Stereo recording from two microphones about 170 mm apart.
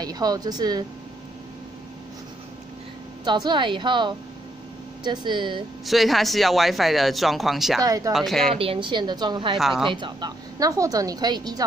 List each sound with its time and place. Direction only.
0.0 s speech: 20° right (ahead or behind)
3.3 s speech: 25° right (ahead or behind)
5.9 s speech: centre (ahead or behind)
7.8 s speech: 20° right (ahead or behind)
8.1 s speech: centre (ahead or behind)
8.5 s speech: 30° right (ahead or behind)
9.6 s speech: centre (ahead or behind)
9.8 s speech: 25° right (ahead or behind)